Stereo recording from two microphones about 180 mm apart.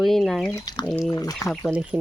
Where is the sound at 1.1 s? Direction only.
20° left (ahead or behind).